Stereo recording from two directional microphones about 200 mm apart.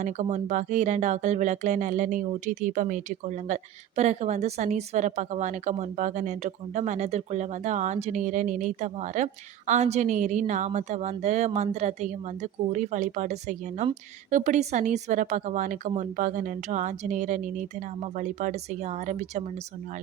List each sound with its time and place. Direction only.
0.0 s speech: 35° right (ahead or behind)